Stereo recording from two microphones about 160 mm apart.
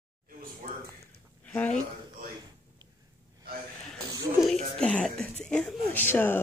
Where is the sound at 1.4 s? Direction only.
10° left (ahead or behind).